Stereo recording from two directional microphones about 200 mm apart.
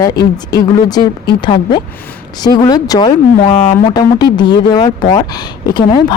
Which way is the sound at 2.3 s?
20° left (ahead or behind).